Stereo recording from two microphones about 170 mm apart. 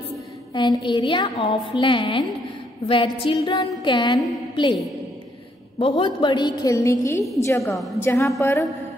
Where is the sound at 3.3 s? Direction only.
20° left (ahead or behind).